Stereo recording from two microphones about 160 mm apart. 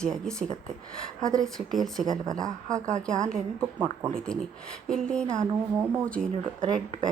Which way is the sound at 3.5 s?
15° right (ahead or behind).